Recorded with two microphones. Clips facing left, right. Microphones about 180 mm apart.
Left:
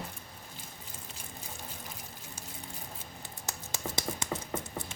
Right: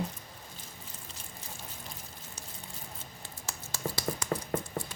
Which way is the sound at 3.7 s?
20° left (ahead or behind).